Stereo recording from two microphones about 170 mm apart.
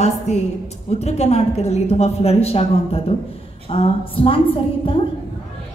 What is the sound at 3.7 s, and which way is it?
Speech, 30° left (ahead or behind).